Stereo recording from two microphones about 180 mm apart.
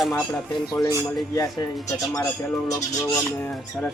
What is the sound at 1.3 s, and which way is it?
Speech, 20° left (ahead or behind).